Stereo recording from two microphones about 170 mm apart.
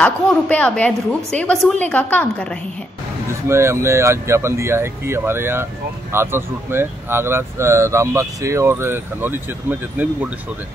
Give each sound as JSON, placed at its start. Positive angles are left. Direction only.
{"t": 0.0, "sound": "a woman's voice", "side_deg": 5}
{"t": 3.4, "sound": "speech", "side_deg": -15}